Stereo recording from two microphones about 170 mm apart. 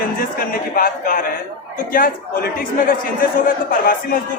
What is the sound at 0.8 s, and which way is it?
A man's voice, 55° left (ahead or behind).